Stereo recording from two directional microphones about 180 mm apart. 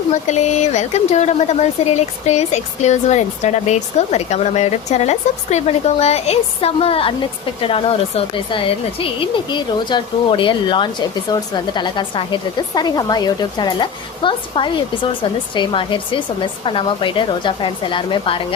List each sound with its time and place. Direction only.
0.1 s speech: 40° left (ahead or behind)